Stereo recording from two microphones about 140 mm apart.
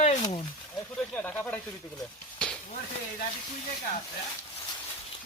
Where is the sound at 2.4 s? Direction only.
5° left (ahead or behind).